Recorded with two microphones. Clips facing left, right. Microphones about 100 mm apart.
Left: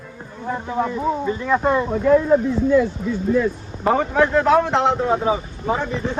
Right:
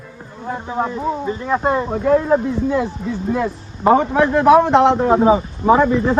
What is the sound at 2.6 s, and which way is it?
Speech, 60° right (ahead or behind).